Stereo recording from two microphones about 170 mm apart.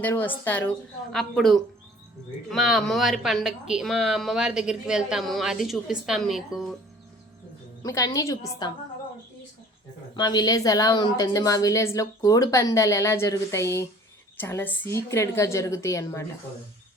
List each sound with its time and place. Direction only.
0.0 s a woman's voice: 10° left (ahead or behind)
7.8 s speech: 20° left (ahead or behind)
10.2 s a woman's voice: 25° left (ahead or behind)